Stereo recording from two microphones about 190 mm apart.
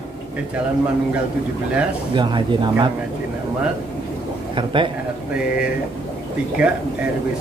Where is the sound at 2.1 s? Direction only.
25° right (ahead or behind).